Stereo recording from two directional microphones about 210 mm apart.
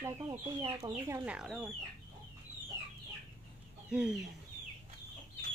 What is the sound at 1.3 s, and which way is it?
Speech, 5° right (ahead or behind).